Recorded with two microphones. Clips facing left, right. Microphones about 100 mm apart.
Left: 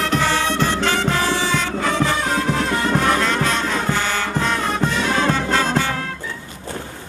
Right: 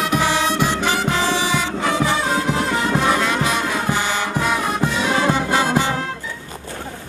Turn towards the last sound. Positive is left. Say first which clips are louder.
# right 1 dB
turn(degrees=-15)  # may be behind; listen again after turning